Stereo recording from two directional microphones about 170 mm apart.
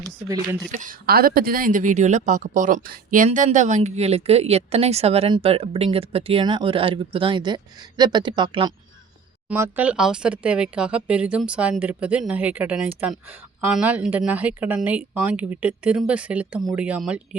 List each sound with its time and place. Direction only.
0.7 s speech: 50° right (ahead or behind); by 8.7 s 30° right (ahead or behind)
9.5 s speech: 10° right (ahead or behind)